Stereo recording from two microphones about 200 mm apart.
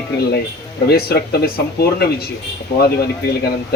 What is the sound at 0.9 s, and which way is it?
Speech, 50° left (ahead or behind).